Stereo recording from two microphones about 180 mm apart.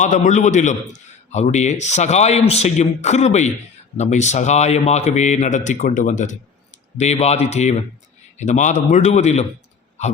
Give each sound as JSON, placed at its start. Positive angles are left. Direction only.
{"t": 0.0, "sound": "a man's voice", "side_deg": 45}